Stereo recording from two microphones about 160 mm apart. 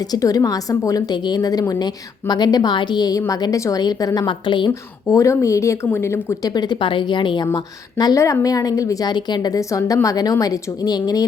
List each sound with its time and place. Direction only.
0.1 s speech: 20° left (ahead or behind)
4.7 s speech: 20° left (ahead or behind)